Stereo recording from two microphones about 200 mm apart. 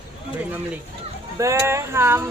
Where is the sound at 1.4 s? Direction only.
15° right (ahead or behind).